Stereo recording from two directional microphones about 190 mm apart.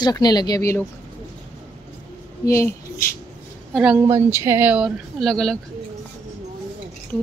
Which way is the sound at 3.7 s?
5° right (ahead or behind).